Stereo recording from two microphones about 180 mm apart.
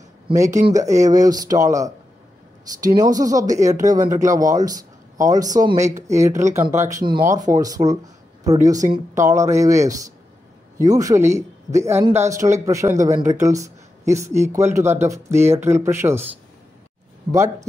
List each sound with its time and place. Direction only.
0.3 s speech: 15° right (ahead or behind)